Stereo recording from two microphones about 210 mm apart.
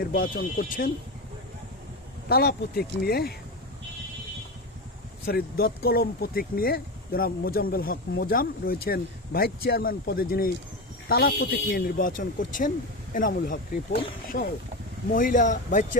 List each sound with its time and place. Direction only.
0.0 s speech: 45° left (ahead or behind)
2.3 s speech: 45° left (ahead or behind)
5.2 s a man's voice: 45° left (ahead or behind)